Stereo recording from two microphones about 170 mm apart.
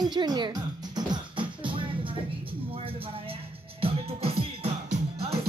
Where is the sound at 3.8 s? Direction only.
35° right (ahead or behind).